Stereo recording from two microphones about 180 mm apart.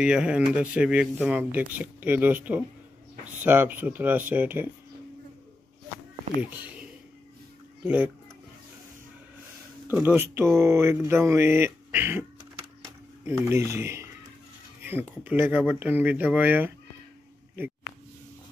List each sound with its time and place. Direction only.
0.0 s speech: 5° right (ahead or behind)
6.4 s speech: 10° right (ahead or behind)
9.8 s speech: 10° right (ahead or behind)